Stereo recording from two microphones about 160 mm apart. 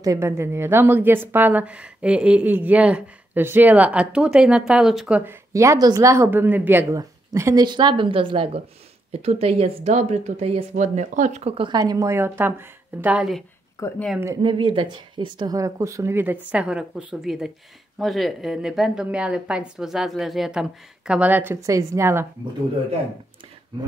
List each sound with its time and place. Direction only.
0.0 s a woman's voice: 20° right (ahead or behind); by 5.2 s centre (ahead or behind)
5.2 s a woman's voice: 20° right (ahead or behind)
11.8 s a woman's voice: 20° right (ahead or behind)
13.7 s speech: 15° left (ahead or behind)
14.2 s a woman's voice: 25° right (ahead or behind)